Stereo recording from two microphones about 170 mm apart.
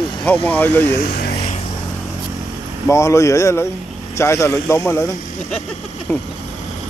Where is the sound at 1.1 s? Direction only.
65° left (ahead or behind).